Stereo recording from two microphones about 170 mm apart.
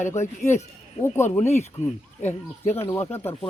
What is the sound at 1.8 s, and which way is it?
Speech, 40° left (ahead or behind).